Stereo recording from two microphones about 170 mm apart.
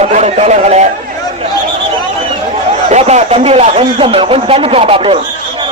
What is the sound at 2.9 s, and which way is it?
Speech, 40° right (ahead or behind).